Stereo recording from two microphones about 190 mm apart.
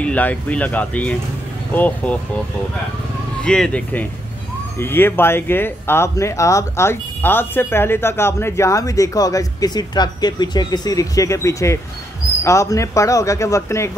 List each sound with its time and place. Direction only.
0.0 s speech: 10° left (ahead or behind)
3.4 s speech: 5° left (ahead or behind)